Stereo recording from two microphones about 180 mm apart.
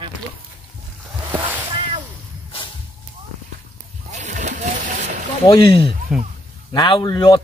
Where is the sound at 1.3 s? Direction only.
10° right (ahead or behind).